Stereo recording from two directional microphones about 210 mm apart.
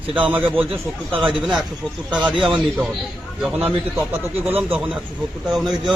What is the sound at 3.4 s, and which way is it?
A man's voice, 10° right (ahead or behind).